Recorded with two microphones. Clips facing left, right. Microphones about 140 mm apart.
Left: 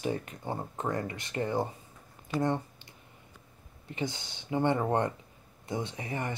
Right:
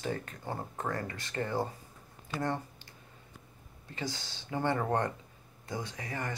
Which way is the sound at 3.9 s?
20° left (ahead or behind).